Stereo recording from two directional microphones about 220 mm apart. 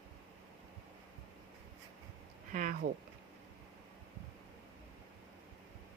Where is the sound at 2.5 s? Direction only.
35° right (ahead or behind).